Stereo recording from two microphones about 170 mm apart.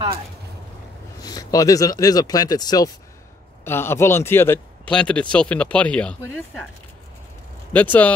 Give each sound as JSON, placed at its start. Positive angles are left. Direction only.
{"t": 1.2, "sound": "a man's voice", "side_deg": 20}
{"t": 7.7, "sound": "a man's voice", "side_deg": 10}